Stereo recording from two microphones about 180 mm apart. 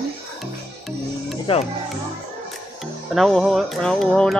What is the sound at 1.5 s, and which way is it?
Speech, 30° left (ahead or behind).